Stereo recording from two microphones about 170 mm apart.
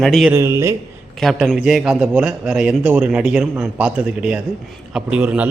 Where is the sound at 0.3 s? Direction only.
15° right (ahead or behind).